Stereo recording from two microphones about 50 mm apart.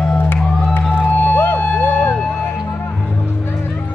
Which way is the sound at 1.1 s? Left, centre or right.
Left.